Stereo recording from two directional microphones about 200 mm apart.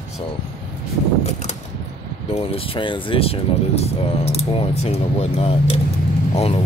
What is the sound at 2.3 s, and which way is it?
Speech, 30° left (ahead or behind).